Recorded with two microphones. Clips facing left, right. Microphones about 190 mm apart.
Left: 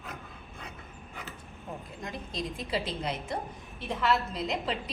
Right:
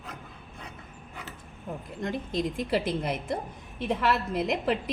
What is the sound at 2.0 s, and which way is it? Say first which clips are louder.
A woman's voice: right 7 dB; 55° right (ahead or behind).